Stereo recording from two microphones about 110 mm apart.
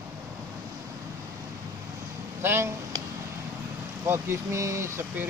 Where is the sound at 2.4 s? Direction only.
25° right (ahead or behind).